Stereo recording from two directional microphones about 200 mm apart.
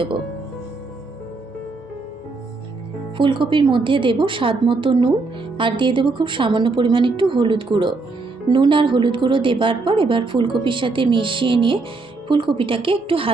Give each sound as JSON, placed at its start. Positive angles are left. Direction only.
{"t": 3.2, "sound": "a woman's voice", "side_deg": -25}